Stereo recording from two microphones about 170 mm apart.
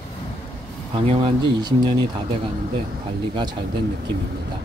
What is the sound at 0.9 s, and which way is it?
Speech, 30° right (ahead or behind).